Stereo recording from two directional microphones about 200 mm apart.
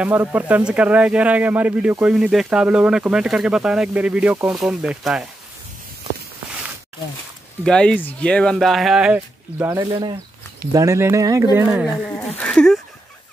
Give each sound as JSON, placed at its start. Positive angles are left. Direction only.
{"t": 0.0, "sound": "speech", "side_deg": -10}
{"t": 7.6, "sound": "speech", "side_deg": 5}
{"t": 12.4, "sound": "a sound", "side_deg": 5}